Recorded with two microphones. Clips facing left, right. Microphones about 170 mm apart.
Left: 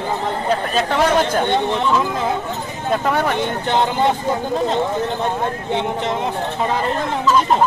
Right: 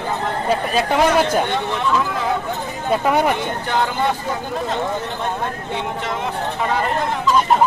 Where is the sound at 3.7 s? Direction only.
25° left (ahead or behind).